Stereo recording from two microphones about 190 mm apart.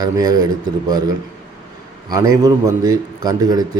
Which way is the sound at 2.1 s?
20° right (ahead or behind).